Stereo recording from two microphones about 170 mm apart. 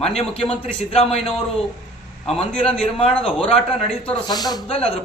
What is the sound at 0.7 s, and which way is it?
Speech, 35° left (ahead or behind).